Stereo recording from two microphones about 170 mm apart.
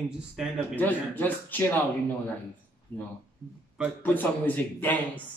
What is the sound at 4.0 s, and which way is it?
Speech, 10° left (ahead or behind).